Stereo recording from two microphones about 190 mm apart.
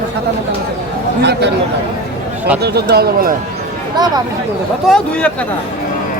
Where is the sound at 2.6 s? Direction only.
55° right (ahead or behind).